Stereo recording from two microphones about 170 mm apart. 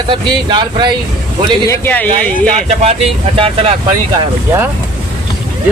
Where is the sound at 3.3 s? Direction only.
30° right (ahead or behind).